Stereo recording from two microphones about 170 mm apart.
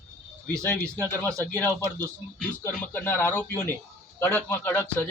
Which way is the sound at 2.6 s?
15° left (ahead or behind).